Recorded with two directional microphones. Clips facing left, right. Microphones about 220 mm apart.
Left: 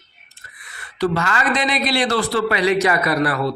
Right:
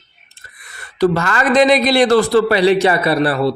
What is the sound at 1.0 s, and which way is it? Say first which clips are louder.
A man's voice: right 5 dB; 40° right (ahead or behind).